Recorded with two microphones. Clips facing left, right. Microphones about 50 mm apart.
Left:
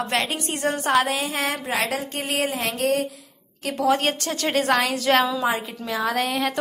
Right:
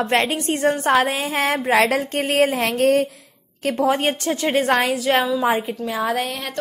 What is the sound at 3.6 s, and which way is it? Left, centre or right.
A woman's voice, right.